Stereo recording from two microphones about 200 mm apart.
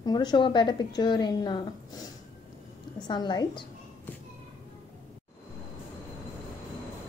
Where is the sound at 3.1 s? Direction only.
20° left (ahead or behind).